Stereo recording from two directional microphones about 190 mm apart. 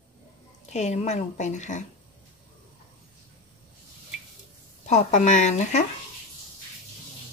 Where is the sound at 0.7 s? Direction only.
35° left (ahead or behind).